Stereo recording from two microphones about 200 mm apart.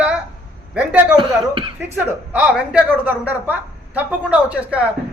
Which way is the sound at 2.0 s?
10° right (ahead or behind).